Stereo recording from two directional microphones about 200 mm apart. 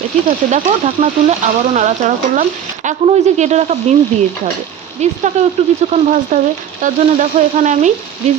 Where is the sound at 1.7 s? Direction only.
35° right (ahead or behind).